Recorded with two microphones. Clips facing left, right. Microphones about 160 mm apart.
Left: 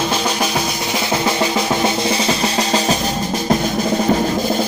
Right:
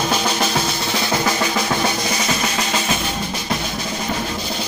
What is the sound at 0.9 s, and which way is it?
Drum, 20° left (ahead or behind).